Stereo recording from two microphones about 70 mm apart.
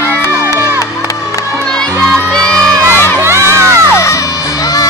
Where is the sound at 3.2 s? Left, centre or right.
Right.